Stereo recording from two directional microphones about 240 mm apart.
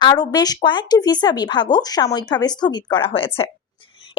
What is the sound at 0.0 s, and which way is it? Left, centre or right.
A woman's voice, centre.